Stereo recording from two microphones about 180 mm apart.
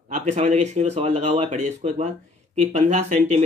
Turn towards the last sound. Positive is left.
turn(degrees=-40)  # may be behind; listen again after turning